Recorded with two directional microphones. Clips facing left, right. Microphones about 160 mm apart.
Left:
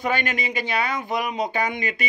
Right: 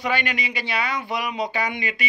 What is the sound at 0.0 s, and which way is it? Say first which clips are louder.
Speech: left 1 dB; 45° left (ahead or behind).